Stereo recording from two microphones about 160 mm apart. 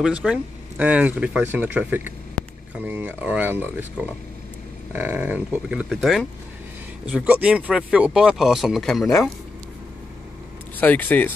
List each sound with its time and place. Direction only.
0.0 s speech: 5° right (ahead or behind)
10.8 s speech: 10° left (ahead or behind)